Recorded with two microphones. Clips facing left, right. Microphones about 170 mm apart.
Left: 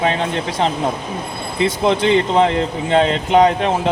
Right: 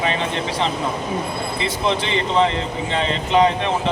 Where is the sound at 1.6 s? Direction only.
50° left (ahead or behind).